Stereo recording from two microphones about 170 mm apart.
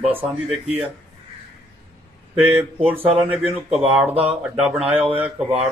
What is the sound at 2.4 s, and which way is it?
Speech, 10° right (ahead or behind).